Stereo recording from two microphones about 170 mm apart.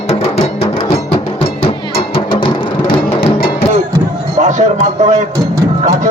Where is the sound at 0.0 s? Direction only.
40° left (ahead or behind).